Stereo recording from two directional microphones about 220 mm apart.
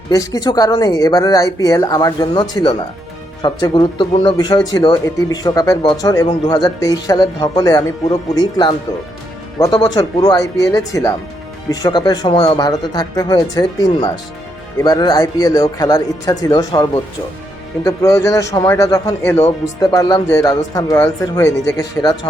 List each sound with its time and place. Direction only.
0.1 s speech: 15° left (ahead or behind)